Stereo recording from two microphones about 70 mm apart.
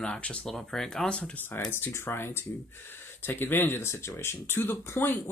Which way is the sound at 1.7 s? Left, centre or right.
Left.